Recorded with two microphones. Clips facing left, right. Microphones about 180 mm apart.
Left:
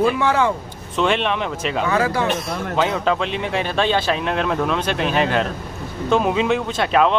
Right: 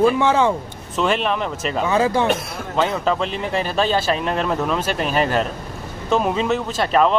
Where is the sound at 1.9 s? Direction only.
20° right (ahead or behind).